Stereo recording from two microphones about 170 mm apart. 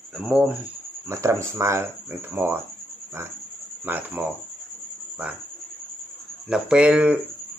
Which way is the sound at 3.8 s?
10° right (ahead or behind).